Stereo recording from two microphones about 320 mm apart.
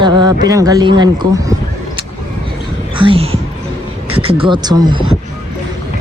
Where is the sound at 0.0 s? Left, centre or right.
Centre.